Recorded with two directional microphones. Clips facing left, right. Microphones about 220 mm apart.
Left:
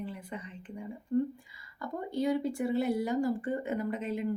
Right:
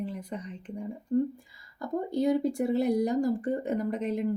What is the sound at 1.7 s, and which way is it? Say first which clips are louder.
A woman's voice: right 5 dB; 40° right (ahead or behind).